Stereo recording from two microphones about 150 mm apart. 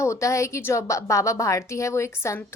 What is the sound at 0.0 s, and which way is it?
A woman's voice, 20° left (ahead or behind).